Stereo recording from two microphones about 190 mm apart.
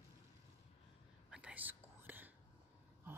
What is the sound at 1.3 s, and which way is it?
Whispering, 5° right (ahead or behind).